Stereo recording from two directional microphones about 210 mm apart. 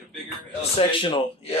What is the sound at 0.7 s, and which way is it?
Speech, 25° left (ahead or behind).